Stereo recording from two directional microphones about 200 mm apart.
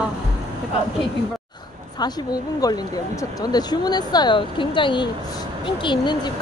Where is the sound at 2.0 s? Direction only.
20° left (ahead or behind).